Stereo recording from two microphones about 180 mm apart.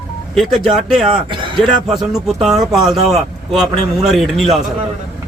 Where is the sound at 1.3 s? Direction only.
25° right (ahead or behind).